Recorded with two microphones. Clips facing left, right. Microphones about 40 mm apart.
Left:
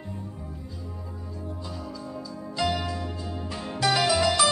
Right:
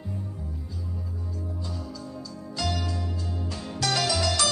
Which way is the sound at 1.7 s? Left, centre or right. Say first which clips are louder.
Left 1 dB; centre.